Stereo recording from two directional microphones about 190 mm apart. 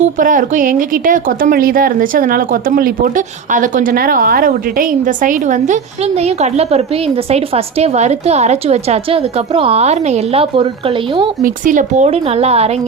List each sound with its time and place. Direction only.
0.2 s a woman's voice: 45° right (ahead or behind); by 11.3 s 25° right (ahead or behind)
11.4 s a woman's voice: 45° right (ahead or behind)